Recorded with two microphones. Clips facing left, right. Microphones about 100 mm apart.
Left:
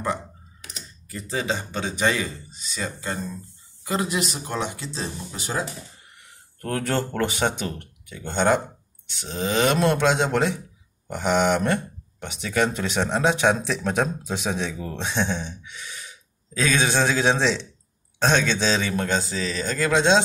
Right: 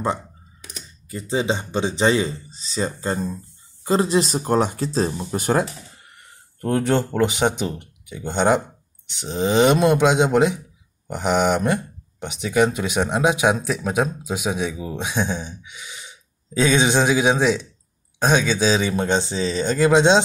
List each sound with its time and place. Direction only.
1.0 s speech: 20° right (ahead or behind); by 5.7 s 55° right (ahead or behind)
6.6 s speech: 20° right (ahead or behind)
16.0 s speech: 25° right (ahead or behind)